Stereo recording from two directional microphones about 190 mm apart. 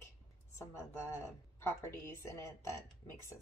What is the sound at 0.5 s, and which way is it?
Speech, 15° left (ahead or behind).